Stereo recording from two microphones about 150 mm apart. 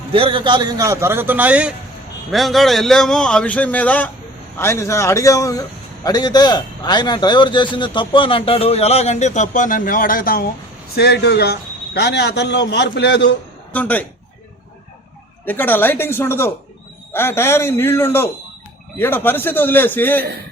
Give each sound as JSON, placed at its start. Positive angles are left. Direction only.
{"t": 0.1, "sound": "a man's voice", "side_deg": -35}
{"t": 10.9, "sound": "a man's voice", "side_deg": 90}
{"t": 13.7, "sound": "a man's voice", "side_deg": 10}
{"t": 15.4, "sound": "a man's voice", "side_deg": 10}